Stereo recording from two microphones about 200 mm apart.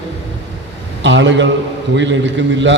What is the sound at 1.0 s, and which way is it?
A man's voice, 65° right (ahead or behind).